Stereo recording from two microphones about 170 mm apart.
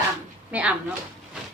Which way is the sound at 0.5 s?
10° right (ahead or behind).